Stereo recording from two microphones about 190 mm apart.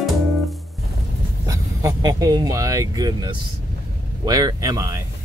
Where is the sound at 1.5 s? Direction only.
20° right (ahead or behind).